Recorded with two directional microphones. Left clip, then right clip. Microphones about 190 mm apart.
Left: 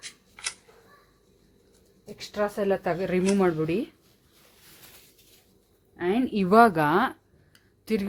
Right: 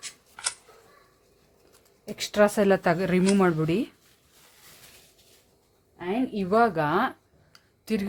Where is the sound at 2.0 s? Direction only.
50° right (ahead or behind); by 3.9 s 5° right (ahead or behind).